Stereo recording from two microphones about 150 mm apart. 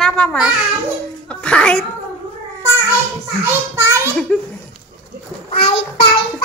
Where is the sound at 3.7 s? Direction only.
20° right (ahead or behind).